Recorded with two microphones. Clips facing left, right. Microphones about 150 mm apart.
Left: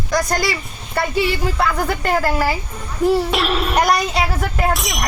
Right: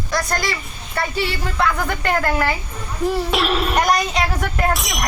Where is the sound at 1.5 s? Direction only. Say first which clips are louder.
Left 1 dB; 5° left (ahead or behind).